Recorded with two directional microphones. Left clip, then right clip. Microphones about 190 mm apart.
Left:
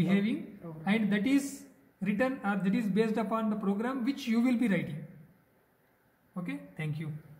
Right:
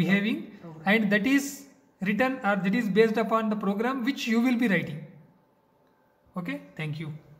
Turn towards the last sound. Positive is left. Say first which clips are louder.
# right 5 dB
turn(degrees=-30)  # may be behind; listen again after turning